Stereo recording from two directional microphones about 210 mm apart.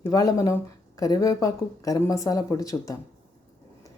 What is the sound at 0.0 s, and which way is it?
Speech, 15° left (ahead or behind).